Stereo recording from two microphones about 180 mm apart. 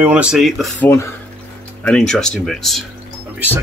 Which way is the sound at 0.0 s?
5° right (ahead or behind).